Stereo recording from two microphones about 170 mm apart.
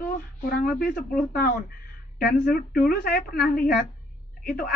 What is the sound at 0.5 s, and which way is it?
A woman's voice, 60° left (ahead or behind).